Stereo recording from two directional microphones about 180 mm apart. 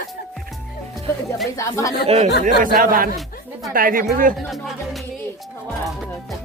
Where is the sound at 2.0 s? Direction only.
35° right (ahead or behind).